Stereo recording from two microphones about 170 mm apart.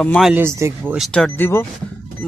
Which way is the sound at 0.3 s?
15° right (ahead or behind).